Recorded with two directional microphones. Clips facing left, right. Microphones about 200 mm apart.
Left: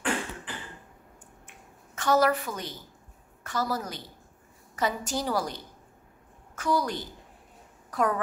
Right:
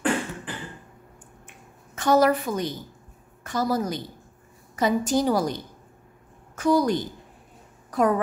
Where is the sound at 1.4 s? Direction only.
20° right (ahead or behind).